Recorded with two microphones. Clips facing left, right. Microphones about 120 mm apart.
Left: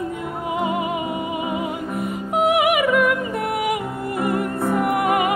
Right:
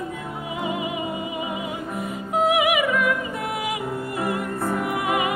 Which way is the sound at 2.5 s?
60° left (ahead or behind).